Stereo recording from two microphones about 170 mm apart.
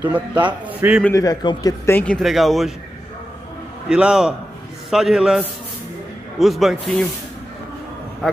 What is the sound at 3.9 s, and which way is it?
A man's voice, 5° right (ahead or behind).